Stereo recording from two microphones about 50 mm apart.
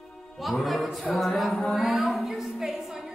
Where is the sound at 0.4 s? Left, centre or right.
Centre.